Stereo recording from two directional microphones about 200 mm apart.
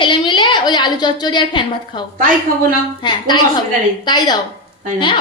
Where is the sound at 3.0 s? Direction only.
20° left (ahead or behind).